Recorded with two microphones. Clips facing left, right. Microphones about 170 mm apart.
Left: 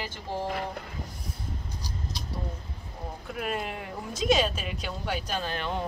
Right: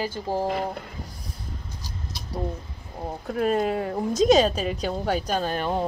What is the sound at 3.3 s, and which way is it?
A woman's voice, 35° right (ahead or behind).